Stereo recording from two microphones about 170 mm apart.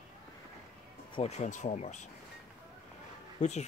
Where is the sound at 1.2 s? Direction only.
40° left (ahead or behind).